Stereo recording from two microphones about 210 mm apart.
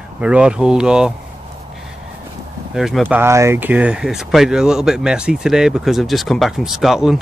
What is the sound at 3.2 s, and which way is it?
Speech, 10° right (ahead or behind).